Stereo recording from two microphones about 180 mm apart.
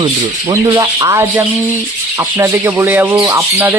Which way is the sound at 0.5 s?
20° right (ahead or behind).